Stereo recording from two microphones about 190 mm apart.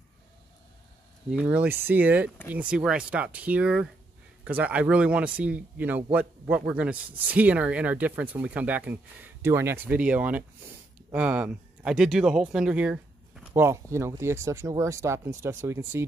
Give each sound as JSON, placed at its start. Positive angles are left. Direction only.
{"t": 1.3, "sound": "speech", "side_deg": -5}